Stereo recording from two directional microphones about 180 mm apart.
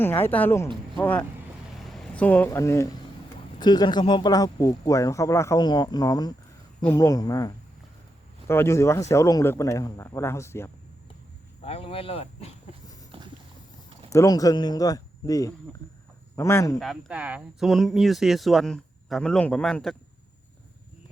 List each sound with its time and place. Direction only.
0.0 s speech: 10° left (ahead or behind)
1.9 s speech: 5° left (ahead or behind)
11.6 s speech: 35° left (ahead or behind)
13.1 s clip-clop: 30° right (ahead or behind)
14.1 s speech: 20° left (ahead or behind)
16.8 s speech: 5° right (ahead or behind)